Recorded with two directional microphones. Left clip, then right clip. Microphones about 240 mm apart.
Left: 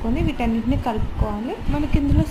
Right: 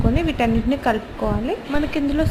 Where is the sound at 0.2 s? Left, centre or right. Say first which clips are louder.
Right 4 dB; centre.